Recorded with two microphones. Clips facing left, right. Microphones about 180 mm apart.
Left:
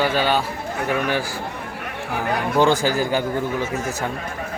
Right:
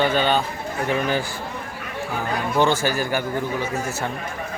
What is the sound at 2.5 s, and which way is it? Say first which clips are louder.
Speech: left 2 dB; 15° left (ahead or behind).